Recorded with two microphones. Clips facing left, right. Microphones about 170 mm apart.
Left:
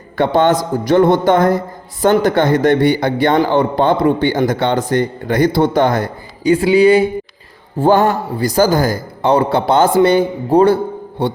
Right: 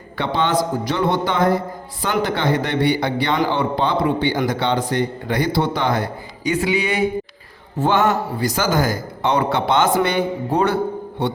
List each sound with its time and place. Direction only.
0.2 s a man's voice: 45° left (ahead or behind)
6.4 s a man's voice: 30° left (ahead or behind)